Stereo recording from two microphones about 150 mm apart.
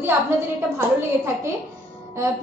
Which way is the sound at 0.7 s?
15° right (ahead or behind).